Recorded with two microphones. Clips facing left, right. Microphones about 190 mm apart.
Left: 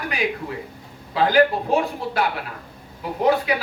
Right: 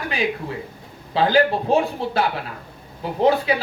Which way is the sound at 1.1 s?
30° right (ahead or behind).